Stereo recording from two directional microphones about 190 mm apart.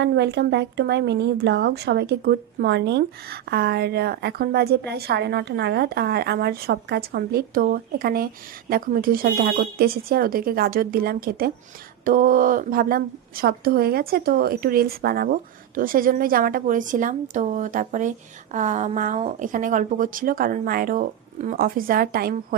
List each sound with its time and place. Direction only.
0.0 s a woman's voice: 65° right (ahead or behind)